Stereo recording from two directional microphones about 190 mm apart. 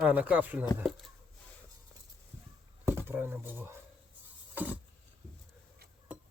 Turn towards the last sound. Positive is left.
turn(degrees=-10)  # may be behind; listen again after turning